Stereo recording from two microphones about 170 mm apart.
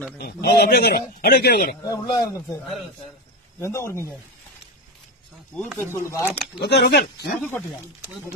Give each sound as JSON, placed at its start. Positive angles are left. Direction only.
{"t": 0.2, "sound": "a man's voice", "side_deg": 70}
{"t": 1.9, "sound": "speech", "side_deg": 20}
{"t": 3.5, "sound": "speech", "side_deg": 15}
{"t": 5.5, "sound": "speech", "side_deg": 10}
{"t": 6.6, "sound": "a man's voice", "side_deg": 80}